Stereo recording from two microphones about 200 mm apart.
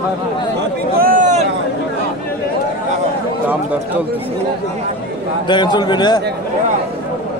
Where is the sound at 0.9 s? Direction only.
45° right (ahead or behind).